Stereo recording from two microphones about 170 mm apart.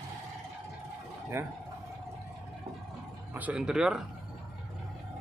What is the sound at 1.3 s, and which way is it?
Speech, 15° right (ahead or behind).